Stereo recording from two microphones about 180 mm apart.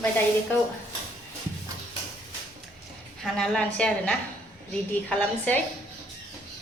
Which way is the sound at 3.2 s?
Centre (ahead or behind).